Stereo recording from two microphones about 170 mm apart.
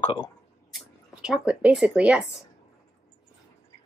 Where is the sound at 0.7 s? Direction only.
Centre (ahead or behind).